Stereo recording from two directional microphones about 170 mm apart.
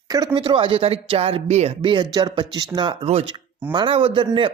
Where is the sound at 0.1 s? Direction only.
20° right (ahead or behind).